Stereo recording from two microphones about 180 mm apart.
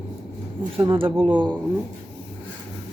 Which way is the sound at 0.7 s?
30° right (ahead or behind).